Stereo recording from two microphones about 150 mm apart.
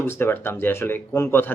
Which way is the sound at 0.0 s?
15° left (ahead or behind).